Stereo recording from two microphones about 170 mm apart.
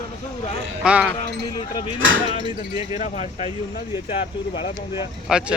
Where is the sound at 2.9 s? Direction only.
40° left (ahead or behind).